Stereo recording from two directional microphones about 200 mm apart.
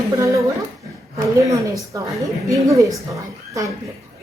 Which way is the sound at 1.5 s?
15° right (ahead or behind).